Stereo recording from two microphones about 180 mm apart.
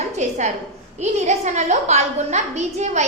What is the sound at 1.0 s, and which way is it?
A woman's voice, 40° right (ahead or behind).